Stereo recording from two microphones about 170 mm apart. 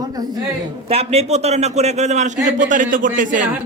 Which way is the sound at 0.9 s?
35° right (ahead or behind).